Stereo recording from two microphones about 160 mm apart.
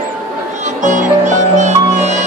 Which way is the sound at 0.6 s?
50° right (ahead or behind).